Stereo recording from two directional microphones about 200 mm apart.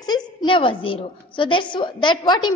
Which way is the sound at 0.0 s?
20° left (ahead or behind).